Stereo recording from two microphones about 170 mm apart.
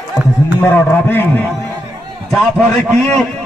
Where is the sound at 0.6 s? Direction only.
10° left (ahead or behind).